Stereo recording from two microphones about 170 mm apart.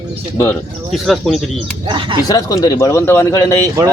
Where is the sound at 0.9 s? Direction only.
Centre (ahead or behind).